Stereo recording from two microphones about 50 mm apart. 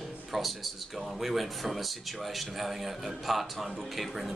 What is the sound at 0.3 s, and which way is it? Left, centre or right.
A man's voice, centre.